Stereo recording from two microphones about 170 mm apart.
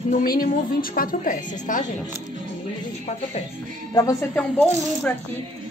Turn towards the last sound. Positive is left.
turn(degrees=10)  # may be behind; listen again after turning